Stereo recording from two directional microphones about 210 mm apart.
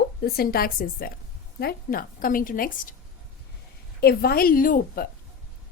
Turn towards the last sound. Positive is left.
turn(degrees=40)  # may be behind; listen again after turning